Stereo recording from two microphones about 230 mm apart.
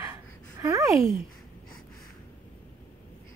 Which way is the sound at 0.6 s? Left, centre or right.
Centre.